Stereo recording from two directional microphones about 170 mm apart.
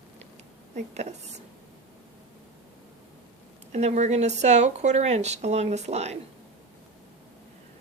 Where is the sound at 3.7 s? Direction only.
45° right (ahead or behind).